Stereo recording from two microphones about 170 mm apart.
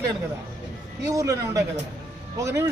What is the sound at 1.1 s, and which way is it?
A man's voice, 20° right (ahead or behind).